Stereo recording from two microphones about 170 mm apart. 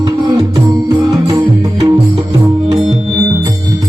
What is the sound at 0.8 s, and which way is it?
Music, 20° right (ahead or behind).